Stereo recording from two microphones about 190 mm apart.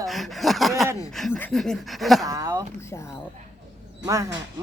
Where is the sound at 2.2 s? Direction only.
15° right (ahead or behind).